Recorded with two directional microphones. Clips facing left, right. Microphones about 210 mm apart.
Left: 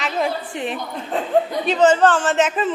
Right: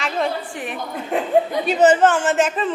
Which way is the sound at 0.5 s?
25° left (ahead or behind).